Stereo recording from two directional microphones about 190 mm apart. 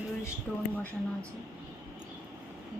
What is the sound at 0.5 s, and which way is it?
Speech, centre (ahead or behind).